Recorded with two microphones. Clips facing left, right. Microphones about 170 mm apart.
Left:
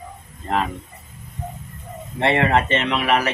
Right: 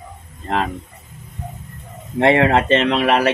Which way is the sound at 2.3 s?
35° right (ahead or behind).